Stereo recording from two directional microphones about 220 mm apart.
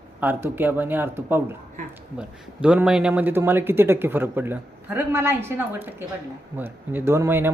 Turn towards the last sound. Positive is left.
turn(degrees=-10)  # may be behind; listen again after turning